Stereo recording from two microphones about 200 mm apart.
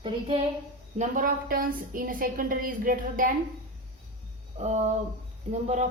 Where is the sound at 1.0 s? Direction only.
45° right (ahead or behind).